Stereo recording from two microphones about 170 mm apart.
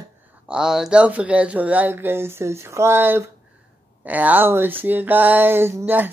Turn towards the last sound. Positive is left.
turn(degrees=-15)  # may be behind; listen again after turning